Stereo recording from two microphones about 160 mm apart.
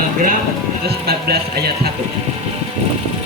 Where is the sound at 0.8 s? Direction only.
75° right (ahead or behind).